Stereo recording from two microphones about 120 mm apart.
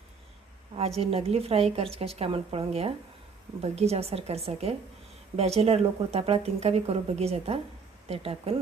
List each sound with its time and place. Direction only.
0.8 s speech: 60° right (ahead or behind)